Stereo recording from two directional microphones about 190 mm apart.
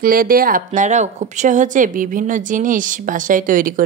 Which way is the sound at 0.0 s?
50° right (ahead or behind).